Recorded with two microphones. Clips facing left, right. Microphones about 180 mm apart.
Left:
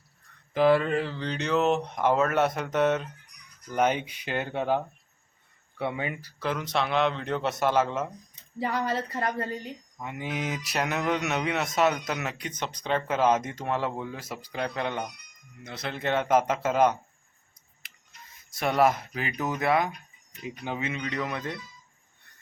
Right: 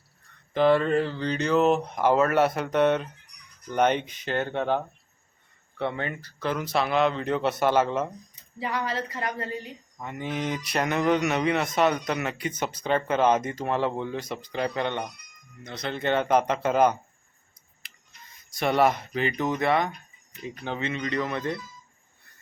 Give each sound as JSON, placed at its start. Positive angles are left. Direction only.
{"t": 0.5, "sound": "speech", "side_deg": 5}
{"t": 6.5, "sound": "speech", "side_deg": -5}
{"t": 8.5, "sound": "speech", "side_deg": 45}
{"t": 9.6, "sound": "speech", "side_deg": 5}
{"t": 17.5, "sound": "a sound", "side_deg": 0}
{"t": 20.7, "sound": "speech", "side_deg": 5}